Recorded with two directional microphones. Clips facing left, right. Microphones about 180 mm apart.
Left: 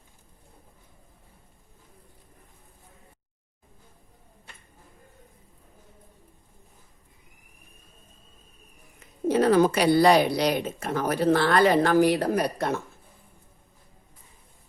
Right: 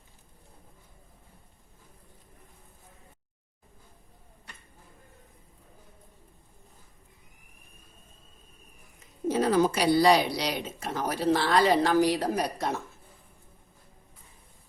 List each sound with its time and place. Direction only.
9.2 s speech: 60° left (ahead or behind)